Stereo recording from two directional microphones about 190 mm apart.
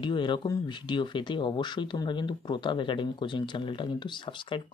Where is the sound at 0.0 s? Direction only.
25° left (ahead or behind).